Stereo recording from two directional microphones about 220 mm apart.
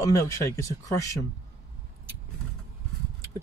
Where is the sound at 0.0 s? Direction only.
15° left (ahead or behind).